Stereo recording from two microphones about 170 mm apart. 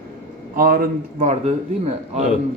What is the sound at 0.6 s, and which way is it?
Speech, 60° right (ahead or behind).